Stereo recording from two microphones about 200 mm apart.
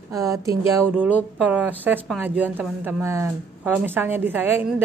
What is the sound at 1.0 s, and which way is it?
Speech, 5° right (ahead or behind).